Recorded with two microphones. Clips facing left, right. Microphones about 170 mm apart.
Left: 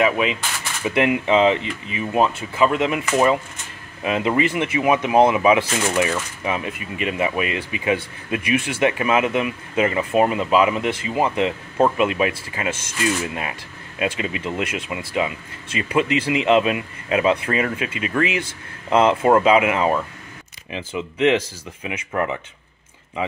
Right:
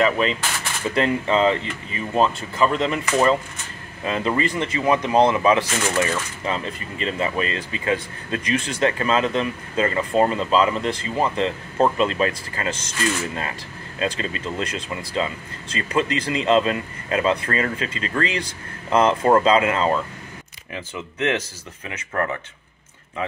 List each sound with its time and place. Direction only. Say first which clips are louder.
0.0 s speech: even; 10° left (ahead or behind)